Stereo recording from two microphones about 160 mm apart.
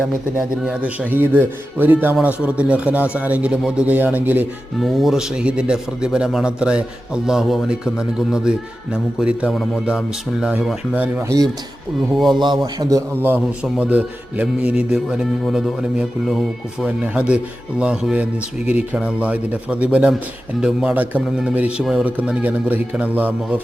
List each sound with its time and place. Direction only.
0.3 s a man's voice: 5° right (ahead or behind)
11.3 s a man's voice: 20° right (ahead or behind)
13.2 s speech: 10° right (ahead or behind)